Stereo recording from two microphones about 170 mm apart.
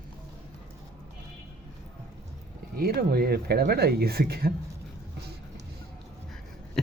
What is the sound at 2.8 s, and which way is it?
Speech, 65° right (ahead or behind).